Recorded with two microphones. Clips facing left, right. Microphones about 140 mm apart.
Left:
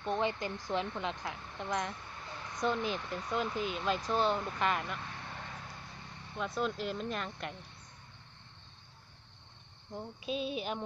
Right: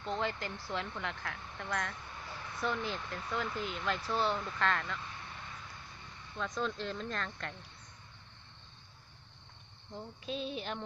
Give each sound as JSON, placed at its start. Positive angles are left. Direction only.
{"t": 0.0, "sound": "speech", "side_deg": 15}
{"t": 5.3, "sound": "vehicle", "side_deg": 55}
{"t": 6.3, "sound": "speech", "side_deg": 15}
{"t": 9.9, "sound": "speech", "side_deg": 15}